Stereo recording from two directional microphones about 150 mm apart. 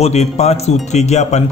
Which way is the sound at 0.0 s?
45° left (ahead or behind).